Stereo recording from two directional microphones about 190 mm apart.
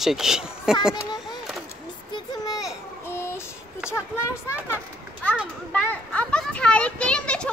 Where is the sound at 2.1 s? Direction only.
20° left (ahead or behind).